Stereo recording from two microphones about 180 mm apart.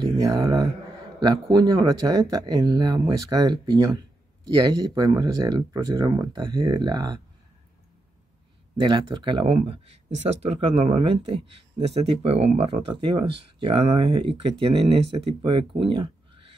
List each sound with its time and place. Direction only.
0.0 s mantra: 20° right (ahead or behind)
1.2 s speech: 25° right (ahead or behind)
8.7 s speech: 30° right (ahead or behind)